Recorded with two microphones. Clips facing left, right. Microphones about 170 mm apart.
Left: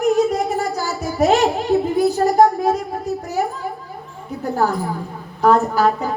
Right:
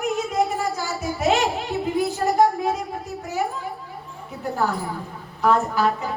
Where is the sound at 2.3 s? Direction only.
40° left (ahead or behind).